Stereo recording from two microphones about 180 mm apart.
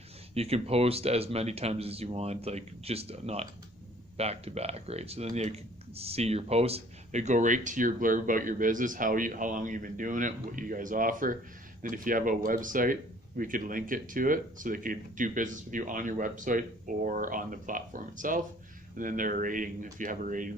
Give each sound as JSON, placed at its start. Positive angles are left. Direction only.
{"t": 0.3, "sound": "speech", "side_deg": -35}